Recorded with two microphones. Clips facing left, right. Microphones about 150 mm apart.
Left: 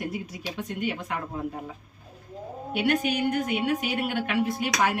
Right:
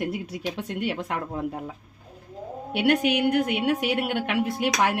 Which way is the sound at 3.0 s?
70° right (ahead or behind).